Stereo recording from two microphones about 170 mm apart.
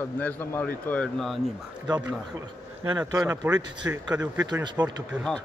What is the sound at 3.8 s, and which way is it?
Speech, 5° right (ahead or behind).